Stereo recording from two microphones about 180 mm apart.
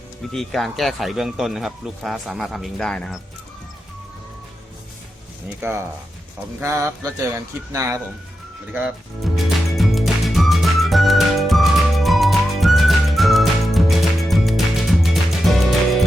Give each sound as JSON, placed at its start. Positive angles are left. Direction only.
{"t": 0.3, "sound": "speech", "side_deg": 0}
{"t": 6.6, "sound": "speech", "side_deg": -15}
{"t": 8.7, "sound": "music", "side_deg": -5}